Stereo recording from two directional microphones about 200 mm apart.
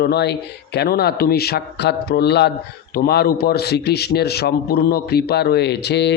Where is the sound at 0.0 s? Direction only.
55° left (ahead or behind).